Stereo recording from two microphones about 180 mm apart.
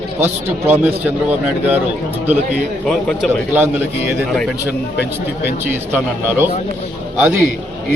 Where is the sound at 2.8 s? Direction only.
Centre (ahead or behind).